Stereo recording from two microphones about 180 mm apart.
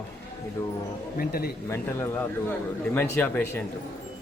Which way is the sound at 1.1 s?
55° left (ahead or behind).